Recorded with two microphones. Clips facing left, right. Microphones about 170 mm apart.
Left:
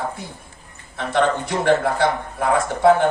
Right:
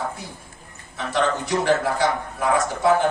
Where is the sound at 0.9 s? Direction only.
55° left (ahead or behind).